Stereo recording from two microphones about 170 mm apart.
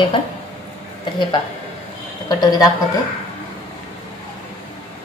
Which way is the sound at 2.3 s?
25° left (ahead or behind).